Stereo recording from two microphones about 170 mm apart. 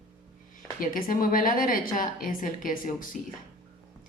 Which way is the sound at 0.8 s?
55° left (ahead or behind).